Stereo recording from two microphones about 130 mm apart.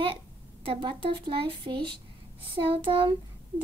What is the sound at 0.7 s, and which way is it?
Speech, 35° right (ahead or behind).